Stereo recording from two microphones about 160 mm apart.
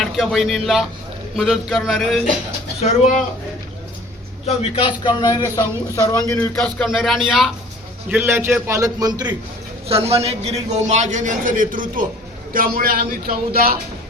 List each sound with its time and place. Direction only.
0.0 s speech: centre (ahead or behind)
4.4 s a man's voice: 35° left (ahead or behind)
6.2 s speech: 10° left (ahead or behind)
8.1 s a man's voice: 15° right (ahead or behind)
9.8 s a man's voice: 40° right (ahead or behind); by 13.7 s 70° right (ahead or behind)